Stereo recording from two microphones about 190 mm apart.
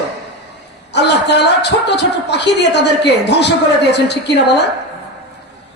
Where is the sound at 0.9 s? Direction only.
65° left (ahead or behind).